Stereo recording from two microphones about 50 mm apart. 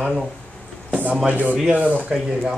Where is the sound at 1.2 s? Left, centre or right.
Right.